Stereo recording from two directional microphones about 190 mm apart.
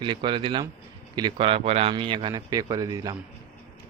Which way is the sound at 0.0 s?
25° right (ahead or behind).